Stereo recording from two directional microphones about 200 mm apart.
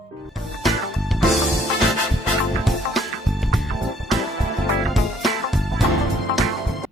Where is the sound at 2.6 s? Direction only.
Centre (ahead or behind).